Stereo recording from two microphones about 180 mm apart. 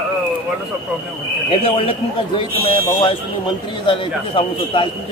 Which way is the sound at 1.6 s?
30° left (ahead or behind).